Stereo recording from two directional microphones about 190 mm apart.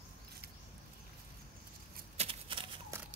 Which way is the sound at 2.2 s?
25° right (ahead or behind).